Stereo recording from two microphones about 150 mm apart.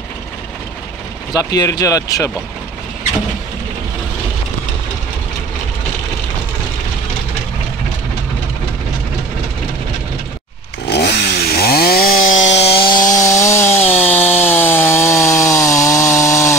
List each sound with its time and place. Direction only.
1.3 s speech: 25° left (ahead or behind)
10.9 s chainsaw: 90° left; by 13.2 s 25° left (ahead or behind)
13.4 s chainsaw: 15° left (ahead or behind)